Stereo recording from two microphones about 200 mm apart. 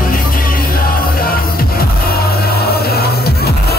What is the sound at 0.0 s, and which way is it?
Music, 45° left (ahead or behind).